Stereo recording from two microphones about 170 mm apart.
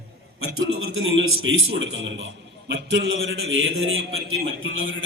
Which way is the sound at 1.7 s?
90° right.